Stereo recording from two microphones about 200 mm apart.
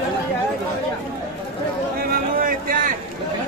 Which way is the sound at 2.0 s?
45° right (ahead or behind).